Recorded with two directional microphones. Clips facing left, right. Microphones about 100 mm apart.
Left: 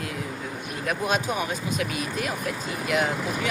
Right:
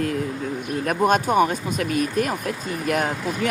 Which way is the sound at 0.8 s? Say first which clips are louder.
Right 6 dB; 45° right (ahead or behind).